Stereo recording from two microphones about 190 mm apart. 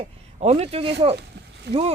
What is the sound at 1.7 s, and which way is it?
Speech, 65° right (ahead or behind).